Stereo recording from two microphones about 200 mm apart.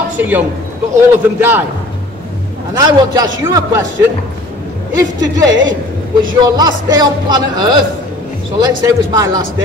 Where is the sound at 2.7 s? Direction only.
20° right (ahead or behind).